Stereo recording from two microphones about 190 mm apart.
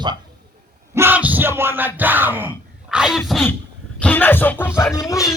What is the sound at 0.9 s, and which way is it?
Yell, 10° right (ahead or behind).